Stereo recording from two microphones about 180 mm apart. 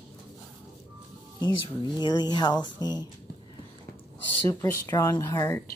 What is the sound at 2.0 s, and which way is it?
Speech, 25° left (ahead or behind).